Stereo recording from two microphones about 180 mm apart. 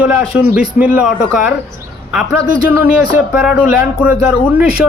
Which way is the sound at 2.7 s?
10° right (ahead or behind).